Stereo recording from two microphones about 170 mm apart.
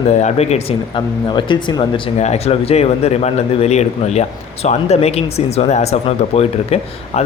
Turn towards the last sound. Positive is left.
turn(degrees=35)  # may be behind; listen again after turning